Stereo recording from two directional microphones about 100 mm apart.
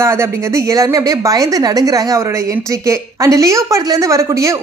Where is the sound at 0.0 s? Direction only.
25° right (ahead or behind).